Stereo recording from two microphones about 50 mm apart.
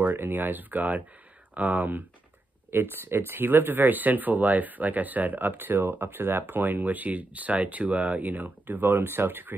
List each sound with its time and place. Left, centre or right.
0.0 s speech: right